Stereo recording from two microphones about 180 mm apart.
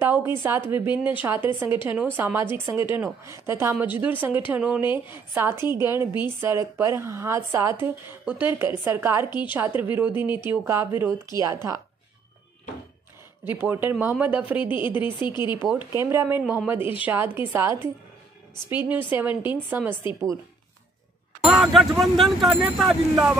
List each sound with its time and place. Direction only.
0.0 s a sound: 15° right (ahead or behind)
0.4 s a woman's voice: 10° right (ahead or behind)
13.5 s a woman's voice: 10° right (ahead or behind)
15.0 s speech: 25° left (ahead or behind)
15.5 s a woman's voice: 10° right (ahead or behind)
21.5 s speech: centre (ahead or behind)